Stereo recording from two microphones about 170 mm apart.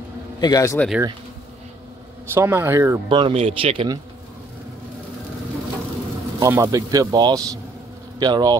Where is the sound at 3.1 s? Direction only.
30° right (ahead or behind).